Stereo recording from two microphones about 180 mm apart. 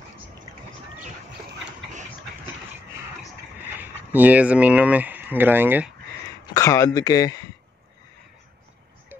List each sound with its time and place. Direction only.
3.7 s speech: 10° right (ahead or behind)
6.4 s speech: 20° left (ahead or behind)